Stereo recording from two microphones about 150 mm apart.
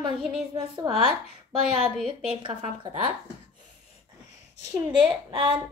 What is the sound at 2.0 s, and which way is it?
Speech, 30° right (ahead or behind).